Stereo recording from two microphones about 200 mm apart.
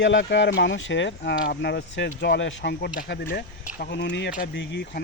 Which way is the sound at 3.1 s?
55° left (ahead or behind).